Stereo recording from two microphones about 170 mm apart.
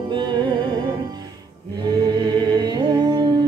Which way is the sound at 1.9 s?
25° right (ahead or behind).